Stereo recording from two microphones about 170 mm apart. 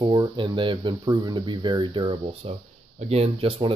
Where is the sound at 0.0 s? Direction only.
25° right (ahead or behind).